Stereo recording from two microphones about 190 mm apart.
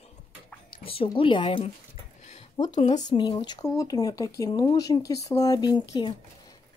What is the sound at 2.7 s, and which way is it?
Speech, 35° left (ahead or behind).